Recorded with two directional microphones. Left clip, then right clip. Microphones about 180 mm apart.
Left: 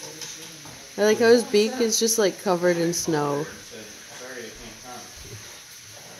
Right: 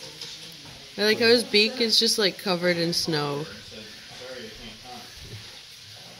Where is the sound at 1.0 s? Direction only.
20° left (ahead or behind).